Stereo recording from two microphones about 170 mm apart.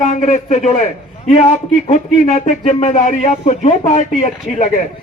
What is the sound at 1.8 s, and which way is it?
Speech, 40° left (ahead or behind).